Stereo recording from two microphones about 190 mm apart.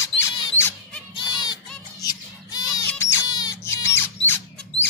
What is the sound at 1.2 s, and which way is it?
Music, 20° left (ahead or behind).